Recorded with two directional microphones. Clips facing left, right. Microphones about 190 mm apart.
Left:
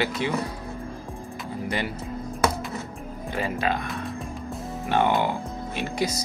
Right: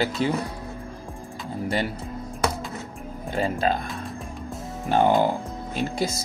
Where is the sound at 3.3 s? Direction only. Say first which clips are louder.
Right 3 dB; 35° right (ahead or behind).